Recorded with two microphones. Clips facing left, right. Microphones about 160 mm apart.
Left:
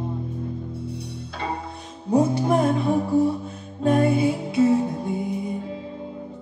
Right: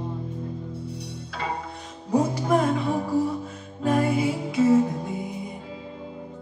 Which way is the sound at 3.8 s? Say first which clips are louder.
Left 3 dB; 30° left (ahead or behind).